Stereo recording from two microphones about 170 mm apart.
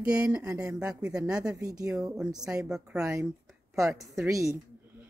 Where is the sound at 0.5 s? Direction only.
20° right (ahead or behind).